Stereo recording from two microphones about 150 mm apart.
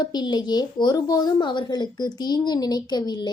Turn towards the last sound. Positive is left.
turn(degrees=30)  # may be behind; listen again after turning